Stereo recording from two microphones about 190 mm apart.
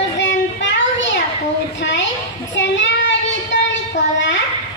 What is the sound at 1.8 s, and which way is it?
Speech, 70° left (ahead or behind).